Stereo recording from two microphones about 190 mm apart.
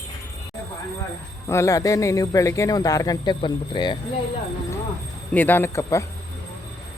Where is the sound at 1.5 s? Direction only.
15° left (ahead or behind).